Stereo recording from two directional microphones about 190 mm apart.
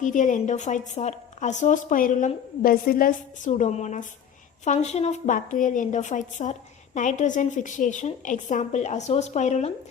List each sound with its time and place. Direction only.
0.0 s a woman's voice: 40° left (ahead or behind)